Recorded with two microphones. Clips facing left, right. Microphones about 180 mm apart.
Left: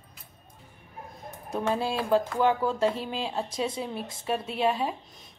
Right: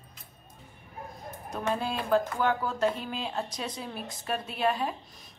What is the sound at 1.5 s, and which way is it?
Speech, 25° left (ahead or behind).